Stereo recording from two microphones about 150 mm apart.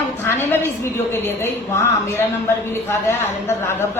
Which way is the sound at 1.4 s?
15° left (ahead or behind).